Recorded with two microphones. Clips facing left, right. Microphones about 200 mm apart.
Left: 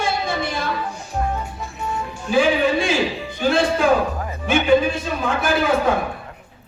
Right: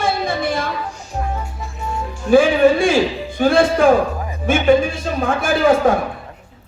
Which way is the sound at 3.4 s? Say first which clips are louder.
Right 5 dB; 50° right (ahead or behind).